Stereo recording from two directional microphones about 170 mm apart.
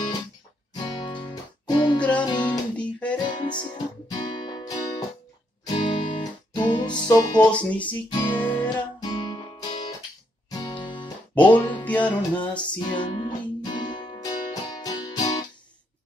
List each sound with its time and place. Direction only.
0.8 s music: 25° left (ahead or behind)
2.0 s music: 5° left (ahead or behind)
2.3 s guitar: 25° left (ahead or behind)
2.7 s guitar: 5° left (ahead or behind)
3.3 s music: 25° left (ahead or behind)
7.5 s speech: 10° left (ahead or behind)
8.1 s guitar: 30° left (ahead or behind)
10.5 s music: 25° left (ahead or behind)
11.8 s music: 10° left (ahead or behind)
12.6 s music: 25° left (ahead or behind)